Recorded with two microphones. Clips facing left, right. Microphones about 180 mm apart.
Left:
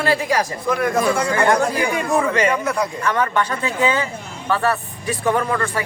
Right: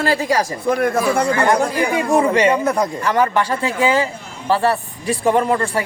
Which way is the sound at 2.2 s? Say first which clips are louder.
Right 4 dB; 30° right (ahead or behind).